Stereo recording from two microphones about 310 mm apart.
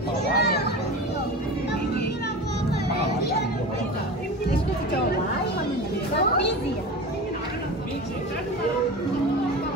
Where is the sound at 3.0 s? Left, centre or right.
Left.